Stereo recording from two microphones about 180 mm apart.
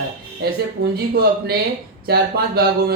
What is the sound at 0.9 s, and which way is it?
A man's voice, 60° right (ahead or behind).